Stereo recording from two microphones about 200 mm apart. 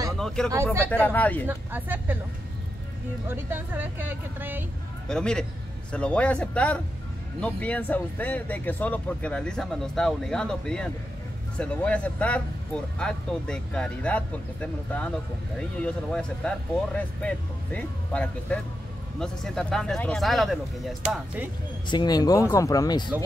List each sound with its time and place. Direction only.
0.8 s speech: 10° left (ahead or behind)
1.5 s speech: 10° right (ahead or behind)
3.3 s speech: 10° right (ahead or behind)
5.0 s a man's voice: 5° left (ahead or behind)
21.8 s speech: 20° left (ahead or behind)